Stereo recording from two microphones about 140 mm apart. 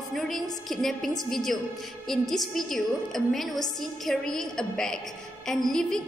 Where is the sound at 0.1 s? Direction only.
Centre (ahead or behind).